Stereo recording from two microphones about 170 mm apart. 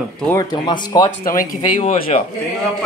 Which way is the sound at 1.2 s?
55° left (ahead or behind).